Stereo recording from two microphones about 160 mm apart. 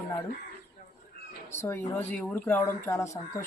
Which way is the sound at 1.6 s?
15° left (ahead or behind).